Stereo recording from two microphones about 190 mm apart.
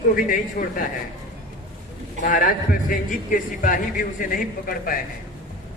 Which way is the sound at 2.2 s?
45° left (ahead or behind).